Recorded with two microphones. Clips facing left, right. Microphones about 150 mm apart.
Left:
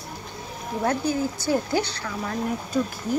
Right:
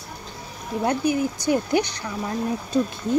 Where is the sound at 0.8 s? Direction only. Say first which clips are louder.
Right 2 dB; 15° right (ahead or behind).